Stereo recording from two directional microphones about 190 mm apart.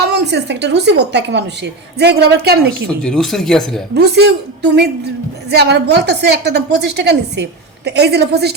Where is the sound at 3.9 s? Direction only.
60° right (ahead or behind).